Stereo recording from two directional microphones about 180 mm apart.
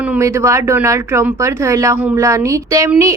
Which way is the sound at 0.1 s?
15° right (ahead or behind).